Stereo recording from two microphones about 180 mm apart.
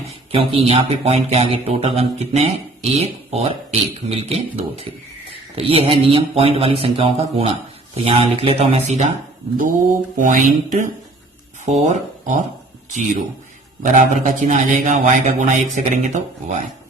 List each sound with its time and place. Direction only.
0.3 s speech: 30° right (ahead or behind)
10.2 s speech: 50° right (ahead or behind)
13.8 s speech: 45° right (ahead or behind)